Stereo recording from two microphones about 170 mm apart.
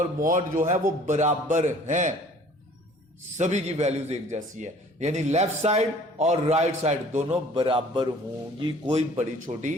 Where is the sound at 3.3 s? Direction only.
45° right (ahead or behind).